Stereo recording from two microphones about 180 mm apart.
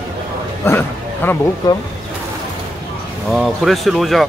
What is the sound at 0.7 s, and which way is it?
Speech, 10° left (ahead or behind).